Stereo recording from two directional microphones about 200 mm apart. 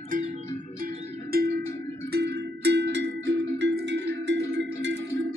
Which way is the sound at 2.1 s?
55° right (ahead or behind).